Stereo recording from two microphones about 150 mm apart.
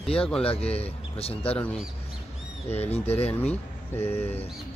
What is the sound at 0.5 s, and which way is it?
Speech, 40° left (ahead or behind).